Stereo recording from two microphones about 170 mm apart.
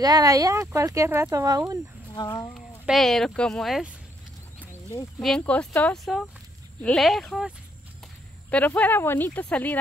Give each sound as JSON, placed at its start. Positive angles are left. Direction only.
{"t": 0.0, "sound": "speech", "side_deg": -20}
{"t": 2.1, "sound": "speech", "side_deg": 25}
{"t": 2.5, "sound": "speech", "side_deg": 0}
{"t": 5.4, "sound": "speech", "side_deg": 10}